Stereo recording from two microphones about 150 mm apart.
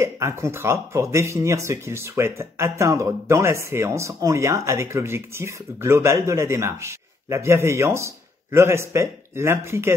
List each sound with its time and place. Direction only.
0.0 s speech: 20° right (ahead or behind)